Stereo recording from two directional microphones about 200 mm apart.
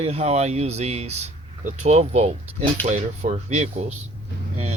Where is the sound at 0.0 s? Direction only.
30° right (ahead or behind).